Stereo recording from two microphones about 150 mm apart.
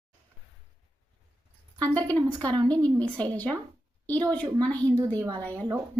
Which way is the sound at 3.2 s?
10° left (ahead or behind).